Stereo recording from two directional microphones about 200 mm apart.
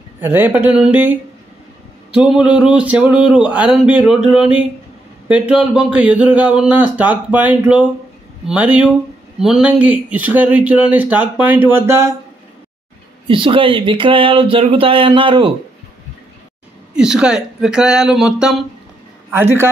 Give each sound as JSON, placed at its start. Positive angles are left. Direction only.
{"t": 0.2, "sound": "speech", "side_deg": -10}
{"t": 2.1, "sound": "speech", "side_deg": -5}
{"t": 13.3, "sound": "speech", "side_deg": -25}
{"t": 16.9, "sound": "speech", "side_deg": -5}
{"t": 19.3, "sound": "speech", "side_deg": -10}